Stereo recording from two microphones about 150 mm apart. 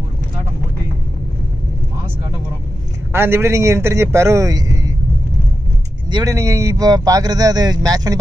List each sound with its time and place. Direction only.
3.1 s speech: 15° right (ahead or behind)
6.0 s speech: 25° right (ahead or behind)